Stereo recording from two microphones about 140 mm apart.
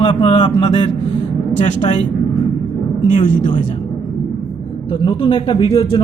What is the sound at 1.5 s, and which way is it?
Speech, 60° left (ahead or behind).